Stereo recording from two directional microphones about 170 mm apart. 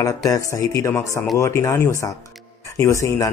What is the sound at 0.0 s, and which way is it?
A man's voice, 20° left (ahead or behind).